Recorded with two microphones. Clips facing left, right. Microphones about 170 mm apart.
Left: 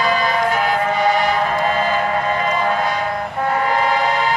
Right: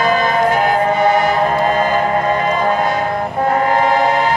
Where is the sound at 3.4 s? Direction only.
45° right (ahead or behind).